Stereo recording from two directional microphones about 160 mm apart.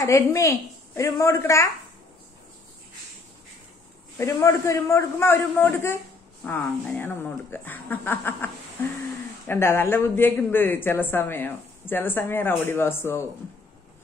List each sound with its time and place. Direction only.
0.0 s a woman's voice: 20° left (ahead or behind)
4.2 s speech: 20° left (ahead or behind)
9.5 s speech: 15° left (ahead or behind)